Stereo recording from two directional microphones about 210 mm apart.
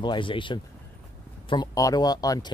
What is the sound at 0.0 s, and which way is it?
Speech, 25° left (ahead or behind).